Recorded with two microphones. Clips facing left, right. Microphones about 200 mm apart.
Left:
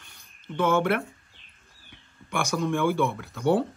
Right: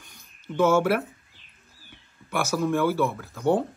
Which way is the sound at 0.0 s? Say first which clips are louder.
Right 3 dB; 5° right (ahead or behind).